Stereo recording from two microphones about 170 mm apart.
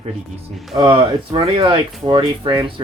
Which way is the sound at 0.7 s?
25° right (ahead or behind).